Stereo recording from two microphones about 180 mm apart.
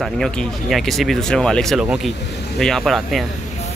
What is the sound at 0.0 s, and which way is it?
Speech, centre (ahead or behind).